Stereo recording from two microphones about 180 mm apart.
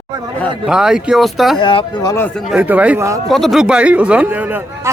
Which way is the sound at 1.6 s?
25° left (ahead or behind).